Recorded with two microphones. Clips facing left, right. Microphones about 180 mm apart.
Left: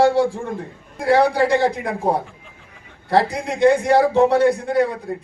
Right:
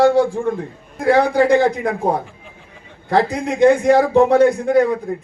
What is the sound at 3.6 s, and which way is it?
Speech, 45° right (ahead or behind).